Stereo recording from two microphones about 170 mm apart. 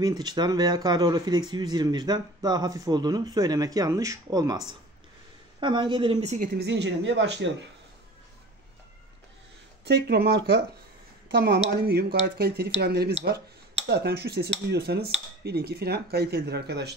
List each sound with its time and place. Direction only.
0.0 s a woman's voice: 25° right (ahead or behind); by 6.5 s 40° right (ahead or behind)
6.5 s speech: 90° right
9.8 s speech: 70° right (ahead or behind)
11.7 s speech: 65° right (ahead or behind)